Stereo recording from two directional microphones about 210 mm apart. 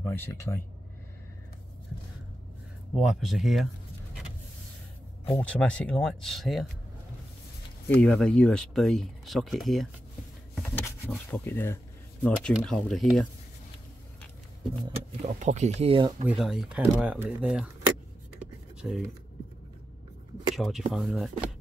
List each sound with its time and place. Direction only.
0.0 s speech: 10° left (ahead or behind)
3.0 s speech: centre (ahead or behind)
5.3 s speech: 5° left (ahead or behind)
7.9 s speech: 5° left (ahead or behind)
15.2 s speech: 35° right (ahead or behind)
16.3 s speech: centre (ahead or behind)
18.4 s writing: 5° right (ahead or behind)
20.5 s speech: centre (ahead or behind)